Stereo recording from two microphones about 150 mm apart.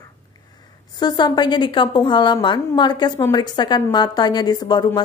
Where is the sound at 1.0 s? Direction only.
25° left (ahead or behind).